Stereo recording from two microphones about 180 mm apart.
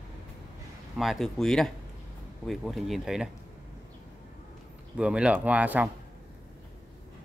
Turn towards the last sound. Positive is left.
turn(degrees=-10)  # may be behind; listen again after turning